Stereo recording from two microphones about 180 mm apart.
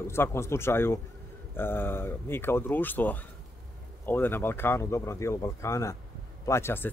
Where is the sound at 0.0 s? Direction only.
15° left (ahead or behind).